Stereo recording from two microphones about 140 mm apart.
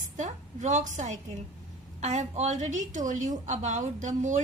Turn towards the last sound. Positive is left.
turn(degrees=-60)  # may be behind; listen again after turning